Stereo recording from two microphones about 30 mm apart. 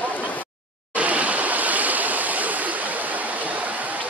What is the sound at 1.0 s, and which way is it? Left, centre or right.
Waves, right.